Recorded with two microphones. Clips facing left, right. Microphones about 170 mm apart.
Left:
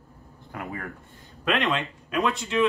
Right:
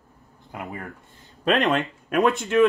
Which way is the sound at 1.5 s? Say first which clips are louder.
Right 4 dB; 40° right (ahead or behind).